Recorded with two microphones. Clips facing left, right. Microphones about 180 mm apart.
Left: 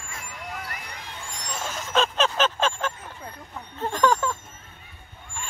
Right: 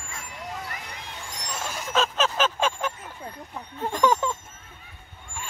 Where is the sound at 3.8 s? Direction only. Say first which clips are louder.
Even; 15° right (ahead or behind).